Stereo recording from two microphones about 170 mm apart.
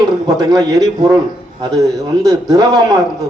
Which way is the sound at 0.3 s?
20° right (ahead or behind).